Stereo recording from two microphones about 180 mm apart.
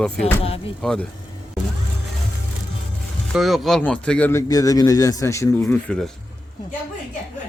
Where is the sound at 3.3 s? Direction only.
Centre (ahead or behind).